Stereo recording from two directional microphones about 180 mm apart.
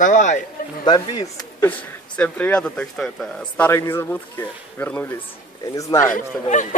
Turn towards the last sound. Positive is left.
turn(degrees=45)  # may be behind; listen again after turning